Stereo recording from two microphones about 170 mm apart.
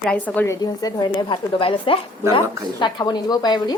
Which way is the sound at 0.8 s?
25° left (ahead or behind).